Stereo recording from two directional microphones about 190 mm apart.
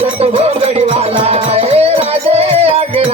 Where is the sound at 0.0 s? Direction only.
30° right (ahead or behind).